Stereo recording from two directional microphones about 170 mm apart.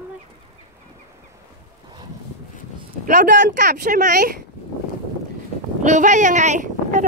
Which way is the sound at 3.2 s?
75° right (ahead or behind).